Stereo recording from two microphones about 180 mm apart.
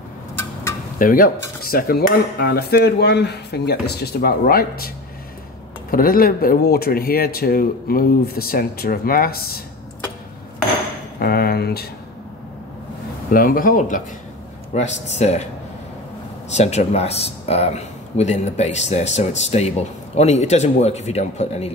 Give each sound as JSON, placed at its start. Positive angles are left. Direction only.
{"t": 0.9, "sound": "speech", "side_deg": 50}
{"t": 11.1, "sound": "speech", "side_deg": 60}
{"t": 13.3, "sound": "speech", "side_deg": 50}
{"t": 16.4, "sound": "speech", "side_deg": 40}